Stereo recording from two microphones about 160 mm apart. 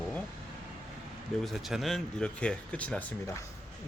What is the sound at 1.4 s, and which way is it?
Speech, centre (ahead or behind).